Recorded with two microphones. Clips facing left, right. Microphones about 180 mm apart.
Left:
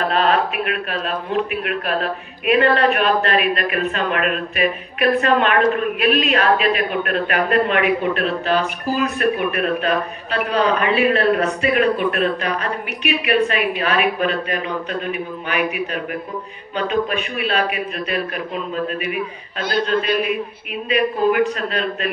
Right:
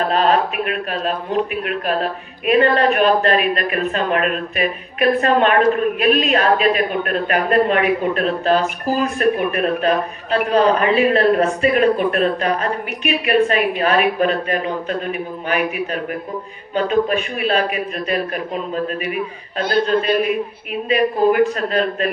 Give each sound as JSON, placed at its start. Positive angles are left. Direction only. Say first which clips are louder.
{"t": 0.0, "sound": "a man's voice", "louder": "right 2 dB", "side_deg": -40}
{"t": 19.7, "sound": "a man's voice", "louder": "right 2 dB", "side_deg": -40}